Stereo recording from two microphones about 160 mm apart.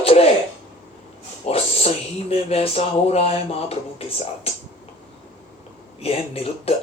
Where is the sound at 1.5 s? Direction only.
40° left (ahead or behind).